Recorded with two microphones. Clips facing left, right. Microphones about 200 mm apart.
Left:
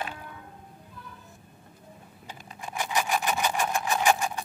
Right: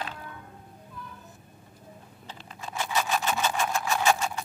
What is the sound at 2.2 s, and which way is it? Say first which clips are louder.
Vehicle: left 1 dB; 15° left (ahead or behind).